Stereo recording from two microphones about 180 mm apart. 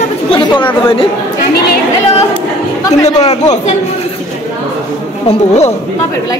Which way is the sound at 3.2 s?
35° left (ahead or behind).